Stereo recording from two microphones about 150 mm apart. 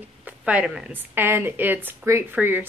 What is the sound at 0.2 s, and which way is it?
Speech, 10° right (ahead or behind).